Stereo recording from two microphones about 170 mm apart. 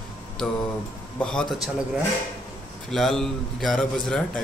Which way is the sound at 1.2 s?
5° left (ahead or behind).